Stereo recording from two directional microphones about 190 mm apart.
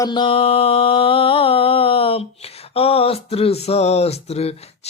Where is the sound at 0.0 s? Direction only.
25° left (ahead or behind).